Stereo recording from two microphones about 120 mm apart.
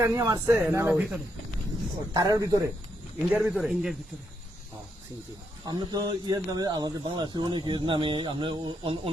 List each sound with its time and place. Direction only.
0.0 s speech: 25° right (ahead or behind)
2.1 s speech: 35° right (ahead or behind)
3.4 s a man's voice: centre (ahead or behind)
5.6 s speech: 35° right (ahead or behind)